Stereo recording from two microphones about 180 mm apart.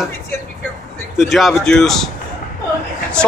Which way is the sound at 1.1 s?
Centre (ahead or behind).